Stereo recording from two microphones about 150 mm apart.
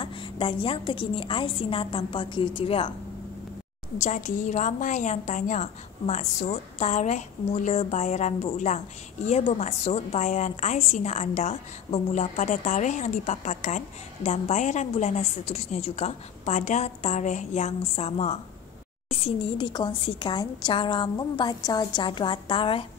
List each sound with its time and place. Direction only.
0.0 s a woman's voice: 35° left (ahead or behind)
4.0 s a woman's voice: 55° left (ahead or behind); by 22.8 s 35° left (ahead or behind)